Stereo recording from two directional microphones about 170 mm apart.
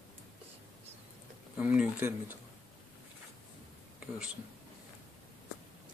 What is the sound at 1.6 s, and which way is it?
Speech, 10° right (ahead or behind).